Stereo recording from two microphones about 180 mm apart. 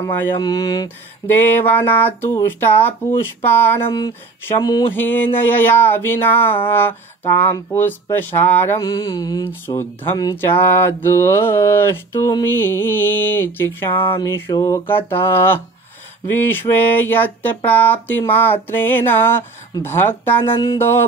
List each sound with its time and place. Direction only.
0.0 s speech: 20° left (ahead or behind)
13.9 s a sound: 30° left (ahead or behind)
14.2 s speech: 15° left (ahead or behind)